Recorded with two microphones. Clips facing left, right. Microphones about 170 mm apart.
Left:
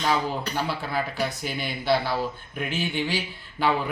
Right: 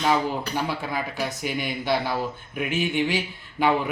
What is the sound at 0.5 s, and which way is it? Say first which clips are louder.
A man's voice: even; 15° right (ahead or behind).